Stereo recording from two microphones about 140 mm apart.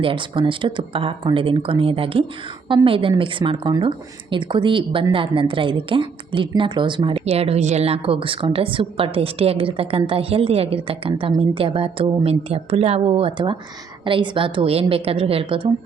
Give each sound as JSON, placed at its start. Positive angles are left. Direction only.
{"t": 0.0, "sound": "a woman's voice", "side_deg": -40}